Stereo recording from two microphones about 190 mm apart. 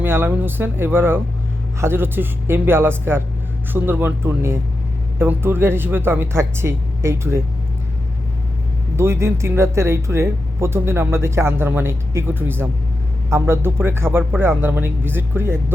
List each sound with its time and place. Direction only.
0.0 s speech: 10° right (ahead or behind)
9.0 s speech: 15° right (ahead or behind)